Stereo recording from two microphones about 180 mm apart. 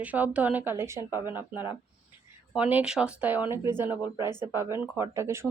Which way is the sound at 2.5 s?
5° right (ahead or behind).